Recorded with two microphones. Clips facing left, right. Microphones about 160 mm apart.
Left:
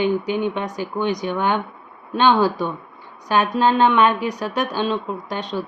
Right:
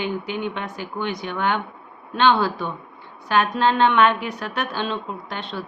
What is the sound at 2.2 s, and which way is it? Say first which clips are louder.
A woman's voice: left 2 dB; 15° left (ahead or behind).